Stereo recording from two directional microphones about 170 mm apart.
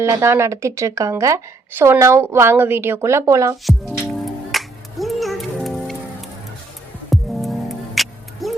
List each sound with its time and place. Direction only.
0.0 s a woman's voice: 15° right (ahead or behind)
4.5 s music: centre (ahead or behind)
7.1 s music: centre (ahead or behind)